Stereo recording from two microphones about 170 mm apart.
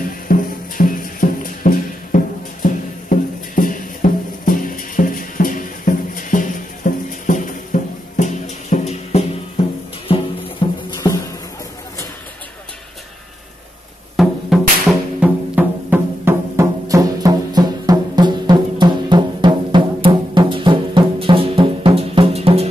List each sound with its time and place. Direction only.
0.3 s music: 55° left (ahead or behind)
10.6 s music: 30° left (ahead or behind)
11.0 s a sound: 25° left (ahead or behind)
14.1 s music: centre (ahead or behind); by 22.7 s 35° right (ahead or behind)